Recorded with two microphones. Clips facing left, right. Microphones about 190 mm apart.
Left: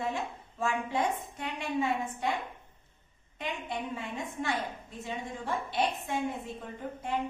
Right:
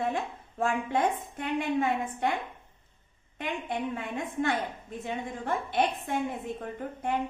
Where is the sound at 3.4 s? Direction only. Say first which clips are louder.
Right 4 dB; 55° right (ahead or behind).